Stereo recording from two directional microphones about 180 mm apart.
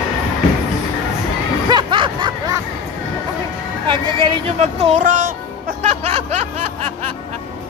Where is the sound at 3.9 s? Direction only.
25° right (ahead or behind).